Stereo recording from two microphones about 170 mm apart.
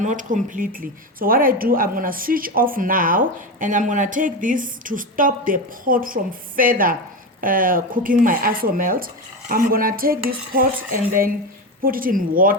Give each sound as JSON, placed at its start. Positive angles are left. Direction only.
{"t": 0.0, "sound": "speech", "side_deg": -50}
{"t": 6.6, "sound": "dishes", "side_deg": -55}